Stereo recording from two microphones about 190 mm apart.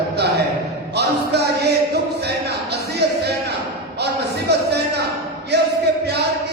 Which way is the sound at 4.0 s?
60° right (ahead or behind).